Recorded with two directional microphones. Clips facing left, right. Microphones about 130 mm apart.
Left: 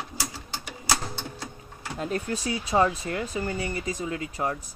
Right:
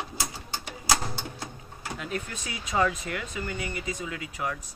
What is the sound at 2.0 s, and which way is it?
Speech, 35° left (ahead or behind).